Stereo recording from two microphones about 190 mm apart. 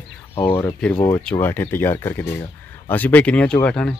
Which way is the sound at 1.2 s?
10° left (ahead or behind).